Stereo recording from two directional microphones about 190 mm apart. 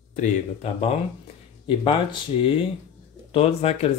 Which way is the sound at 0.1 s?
35° left (ahead or behind).